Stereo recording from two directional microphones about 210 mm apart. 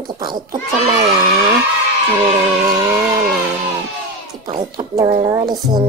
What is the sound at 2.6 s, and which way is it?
Speech, 15° right (ahead or behind).